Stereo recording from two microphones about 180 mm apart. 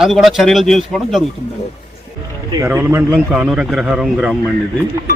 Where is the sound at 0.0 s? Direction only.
Centre (ahead or behind).